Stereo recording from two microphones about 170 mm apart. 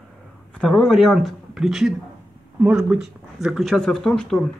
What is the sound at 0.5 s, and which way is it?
Speech, 5° left (ahead or behind).